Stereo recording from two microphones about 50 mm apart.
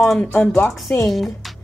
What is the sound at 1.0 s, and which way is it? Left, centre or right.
Speech, centre.